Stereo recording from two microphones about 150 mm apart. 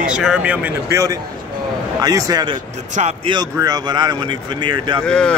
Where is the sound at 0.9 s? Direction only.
20° right (ahead or behind).